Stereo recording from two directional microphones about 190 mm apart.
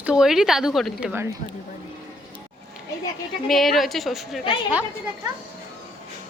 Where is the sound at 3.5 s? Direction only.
Centre (ahead or behind).